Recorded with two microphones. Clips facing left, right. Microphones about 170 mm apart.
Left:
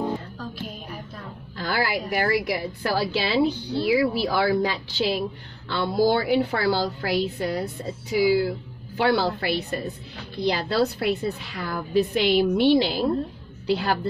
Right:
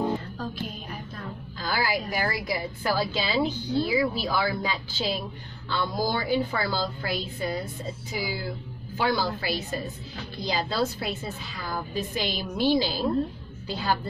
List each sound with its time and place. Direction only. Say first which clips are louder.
1.6 s a woman's voice: left 2 dB; 65° left (ahead or behind)